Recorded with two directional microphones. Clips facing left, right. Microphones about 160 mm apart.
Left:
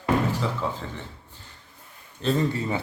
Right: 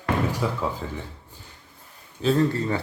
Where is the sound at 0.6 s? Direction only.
10° right (ahead or behind).